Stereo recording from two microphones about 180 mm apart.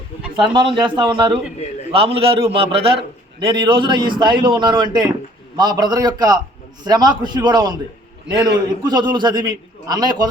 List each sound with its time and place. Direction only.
0.3 s a man's voice: 25° right (ahead or behind)